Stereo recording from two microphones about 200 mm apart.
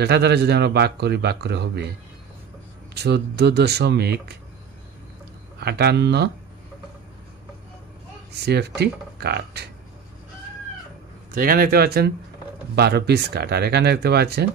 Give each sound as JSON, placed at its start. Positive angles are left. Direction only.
{"t": 0.0, "sound": "speech", "side_deg": -55}
{"t": 2.9, "sound": "speech", "side_deg": -55}
{"t": 5.6, "sound": "speech", "side_deg": -55}
{"t": 8.5, "sound": "speech", "side_deg": -55}
{"t": 11.3, "sound": "speech", "side_deg": -45}